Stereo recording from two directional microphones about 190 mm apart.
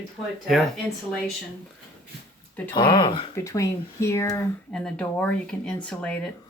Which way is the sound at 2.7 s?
25° left (ahead or behind).